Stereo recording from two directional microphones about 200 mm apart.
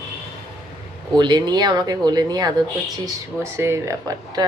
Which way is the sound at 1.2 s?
20° right (ahead or behind).